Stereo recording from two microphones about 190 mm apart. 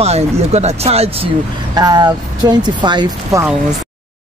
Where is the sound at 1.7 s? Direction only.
20° right (ahead or behind).